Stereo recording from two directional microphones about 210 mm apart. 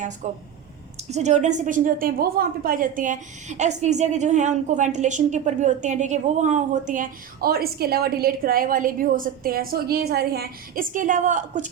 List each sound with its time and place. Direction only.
0.2 s a woman's voice: 35° right (ahead or behind)